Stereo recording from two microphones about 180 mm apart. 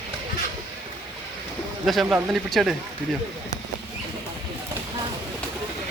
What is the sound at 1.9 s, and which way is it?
Speech, centre (ahead or behind).